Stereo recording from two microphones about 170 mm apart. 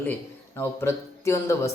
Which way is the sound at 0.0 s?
10° left (ahead or behind).